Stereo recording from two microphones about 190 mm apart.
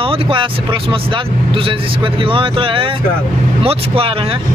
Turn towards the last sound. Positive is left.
turn(degrees=-30)  # may be behind; listen again after turning